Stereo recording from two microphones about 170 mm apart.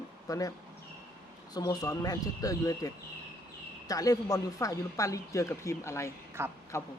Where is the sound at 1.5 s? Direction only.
20° left (ahead or behind).